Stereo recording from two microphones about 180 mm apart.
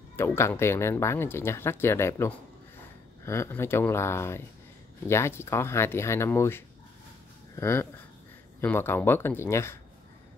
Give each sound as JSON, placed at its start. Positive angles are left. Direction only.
{"t": 0.1, "sound": "speech", "side_deg": 15}